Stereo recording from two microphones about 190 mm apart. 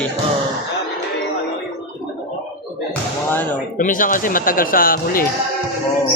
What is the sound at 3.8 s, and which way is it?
Speech, 45° left (ahead or behind).